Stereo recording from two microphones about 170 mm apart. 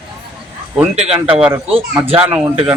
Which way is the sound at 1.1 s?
5° right (ahead or behind).